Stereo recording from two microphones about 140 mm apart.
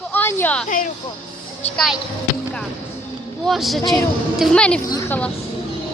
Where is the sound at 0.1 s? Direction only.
15° left (ahead or behind).